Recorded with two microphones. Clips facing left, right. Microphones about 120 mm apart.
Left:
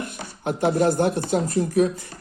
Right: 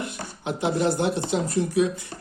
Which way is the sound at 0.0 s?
50° left (ahead or behind).